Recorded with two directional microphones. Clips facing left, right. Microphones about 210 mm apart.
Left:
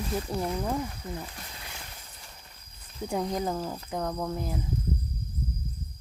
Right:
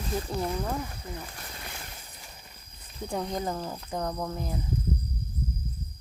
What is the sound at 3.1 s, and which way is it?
Speech, 5° left (ahead or behind).